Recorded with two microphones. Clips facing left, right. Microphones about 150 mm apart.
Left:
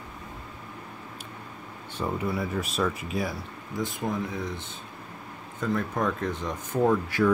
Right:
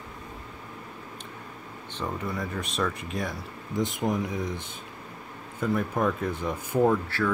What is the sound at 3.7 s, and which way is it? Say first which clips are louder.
Speech: right 3 dB; 20° right (ahead or behind).